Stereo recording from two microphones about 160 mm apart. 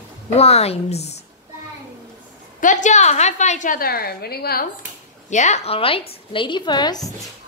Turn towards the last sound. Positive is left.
turn(degrees=25)  # may be behind; listen again after turning